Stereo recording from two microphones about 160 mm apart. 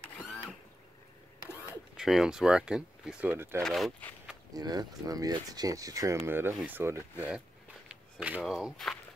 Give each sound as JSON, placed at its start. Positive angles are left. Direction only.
{"t": 2.0, "sound": "speech", "side_deg": 0}
{"t": 3.6, "sound": "speech", "side_deg": 0}
{"t": 4.6, "sound": "speech", "side_deg": -25}
{"t": 7.9, "sound": "a sound", "side_deg": -5}
{"t": 8.4, "sound": "speech", "side_deg": 0}